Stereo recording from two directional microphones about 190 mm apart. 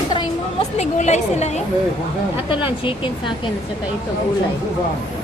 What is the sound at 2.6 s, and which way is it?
Speech, 25° left (ahead or behind).